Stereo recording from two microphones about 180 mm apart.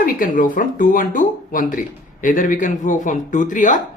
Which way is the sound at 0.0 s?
50° left (ahead or behind).